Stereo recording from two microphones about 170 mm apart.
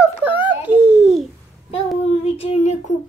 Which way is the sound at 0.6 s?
5° right (ahead or behind).